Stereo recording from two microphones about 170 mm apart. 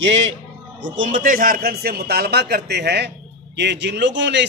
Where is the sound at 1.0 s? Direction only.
50° right (ahead or behind); by 4.4 s 90° right.